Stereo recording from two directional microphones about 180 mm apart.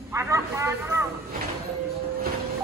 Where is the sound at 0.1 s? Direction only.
15° right (ahead or behind).